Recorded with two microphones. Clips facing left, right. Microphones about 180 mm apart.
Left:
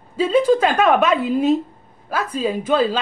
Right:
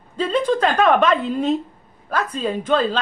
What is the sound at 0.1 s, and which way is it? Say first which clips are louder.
A woman's voice: left 4 dB; 10° left (ahead or behind).